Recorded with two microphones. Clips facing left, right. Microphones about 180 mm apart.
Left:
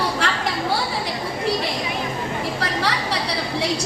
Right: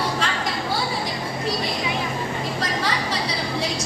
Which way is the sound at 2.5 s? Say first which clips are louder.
Even; 65° left (ahead or behind).